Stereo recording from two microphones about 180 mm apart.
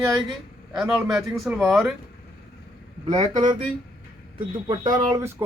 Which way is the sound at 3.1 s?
40° right (ahead or behind).